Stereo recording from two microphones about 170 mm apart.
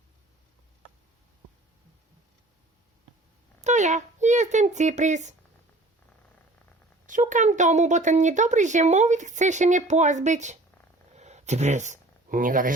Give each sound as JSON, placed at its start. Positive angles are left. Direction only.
{"t": 3.6, "sound": "a child's voice", "side_deg": -45}
{"t": 7.1, "sound": "a woman's voice", "side_deg": -45}
{"t": 11.2, "sound": "a sound", "side_deg": -40}